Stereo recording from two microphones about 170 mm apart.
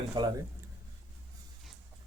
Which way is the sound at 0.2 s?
25° right (ahead or behind).